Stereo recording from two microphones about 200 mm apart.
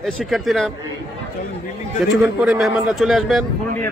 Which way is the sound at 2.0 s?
5° right (ahead or behind).